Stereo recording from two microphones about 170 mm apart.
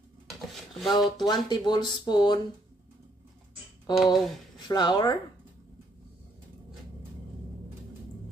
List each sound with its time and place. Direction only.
0.3 s dishes: centre (ahead or behind)
1.2 s speech: 25° left (ahead or behind)
3.9 s typing: centre (ahead or behind)
4.6 s speech: 25° left (ahead or behind)